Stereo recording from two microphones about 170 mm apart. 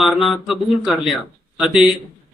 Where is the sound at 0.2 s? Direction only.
Centre (ahead or behind).